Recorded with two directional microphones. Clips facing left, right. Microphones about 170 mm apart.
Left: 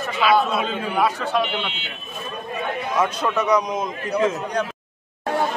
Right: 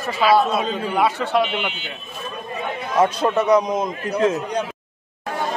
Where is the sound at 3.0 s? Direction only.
30° right (ahead or behind).